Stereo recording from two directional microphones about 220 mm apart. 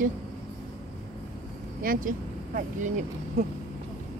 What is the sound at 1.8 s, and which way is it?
A woman's voice, 40° right (ahead or behind).